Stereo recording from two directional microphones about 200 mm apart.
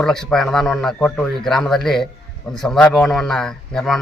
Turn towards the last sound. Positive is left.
turn(degrees=0)  # may be behind; listen again after turning